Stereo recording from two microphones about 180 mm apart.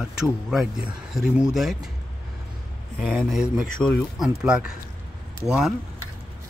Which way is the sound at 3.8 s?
Centre (ahead or behind).